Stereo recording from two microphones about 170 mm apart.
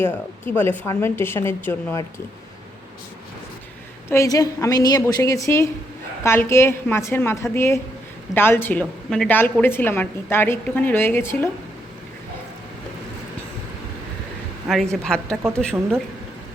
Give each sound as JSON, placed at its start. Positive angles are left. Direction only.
{"t": 0.0, "sound": "a woman's voice", "side_deg": 10}
{"t": 4.1, "sound": "a woman's voice", "side_deg": 20}
{"t": 14.9, "sound": "a woman's voice", "side_deg": 5}